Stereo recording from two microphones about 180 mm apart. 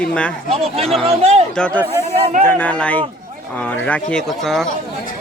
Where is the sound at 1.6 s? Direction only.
5° left (ahead or behind).